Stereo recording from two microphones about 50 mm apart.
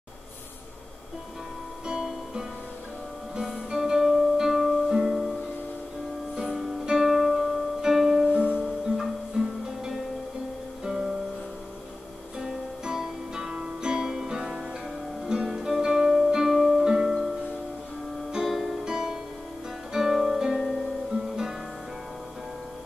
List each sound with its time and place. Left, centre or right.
3.3 s music: centre
6.5 s music: centre
8.3 s music: right
10.8 s music: centre
12.4 s music: centre
15.2 s guitar: centre
16.3 s music: centre
18.3 s music: centre